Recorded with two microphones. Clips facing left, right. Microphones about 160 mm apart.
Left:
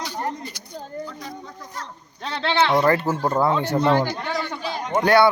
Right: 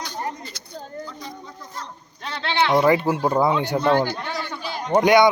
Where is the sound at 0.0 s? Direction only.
10° left (ahead or behind).